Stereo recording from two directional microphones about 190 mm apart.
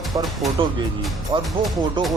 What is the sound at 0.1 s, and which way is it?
Speech, 20° right (ahead or behind).